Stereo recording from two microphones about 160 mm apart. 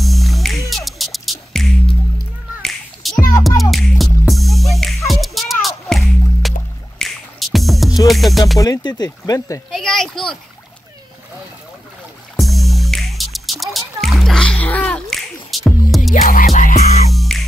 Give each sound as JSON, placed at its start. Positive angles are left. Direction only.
{"t": 0.0, "sound": "music", "side_deg": 0}
{"t": 8.5, "sound": "speech", "side_deg": 20}
{"t": 9.7, "sound": "speech", "side_deg": 0}
{"t": 12.4, "sound": "music", "side_deg": 0}
{"t": 16.2, "sound": "music", "side_deg": 60}
{"t": 17.1, "sound": "music", "side_deg": 0}